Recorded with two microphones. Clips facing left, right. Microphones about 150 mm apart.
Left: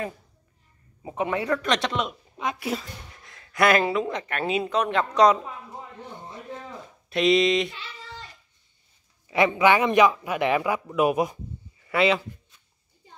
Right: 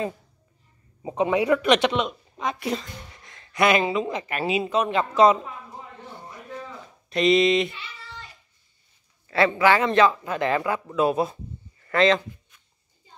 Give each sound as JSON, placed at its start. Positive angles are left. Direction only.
{"t": 1.0, "sound": "speech", "side_deg": -20}
{"t": 2.0, "sound": "speech", "side_deg": 0}
{"t": 6.1, "sound": "a sound", "side_deg": 25}
{"t": 7.1, "sound": "speech", "side_deg": 0}
{"t": 9.3, "sound": "a man's voice", "side_deg": 15}